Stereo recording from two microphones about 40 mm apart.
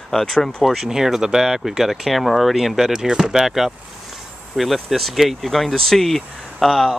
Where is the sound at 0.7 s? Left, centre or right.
Centre.